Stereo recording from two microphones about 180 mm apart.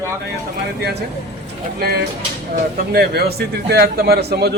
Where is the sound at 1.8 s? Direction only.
60° right (ahead or behind).